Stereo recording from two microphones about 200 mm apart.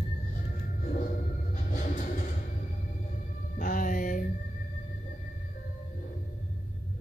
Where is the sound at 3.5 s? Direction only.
40° left (ahead or behind).